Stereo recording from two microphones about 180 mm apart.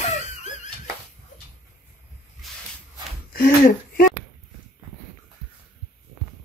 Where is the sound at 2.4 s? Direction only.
Centre (ahead or behind).